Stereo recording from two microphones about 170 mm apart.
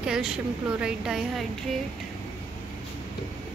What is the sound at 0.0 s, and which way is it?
A woman's voice, 5° right (ahead or behind).